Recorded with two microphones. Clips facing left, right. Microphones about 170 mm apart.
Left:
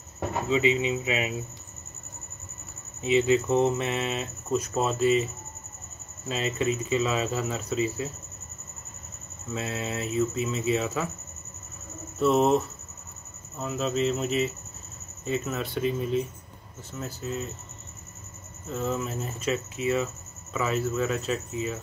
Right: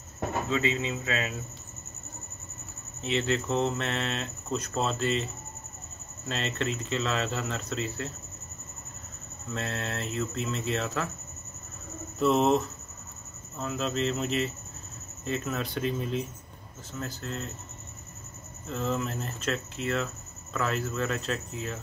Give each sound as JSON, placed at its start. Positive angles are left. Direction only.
{"t": 0.5, "sound": "speech", "side_deg": 15}
{"t": 3.0, "sound": "speech", "side_deg": 10}
{"t": 9.5, "sound": "speech", "side_deg": 5}
{"t": 12.2, "sound": "speech", "side_deg": 5}
{"t": 18.7, "sound": "speech", "side_deg": 5}